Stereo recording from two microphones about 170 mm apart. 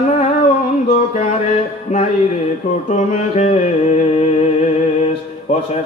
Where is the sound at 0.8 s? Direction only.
35° left (ahead or behind).